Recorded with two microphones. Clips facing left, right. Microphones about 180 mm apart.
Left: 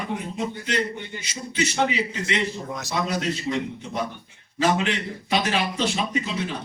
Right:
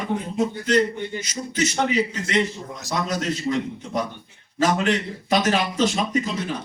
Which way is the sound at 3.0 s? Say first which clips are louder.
Right 3 dB; 45° right (ahead or behind).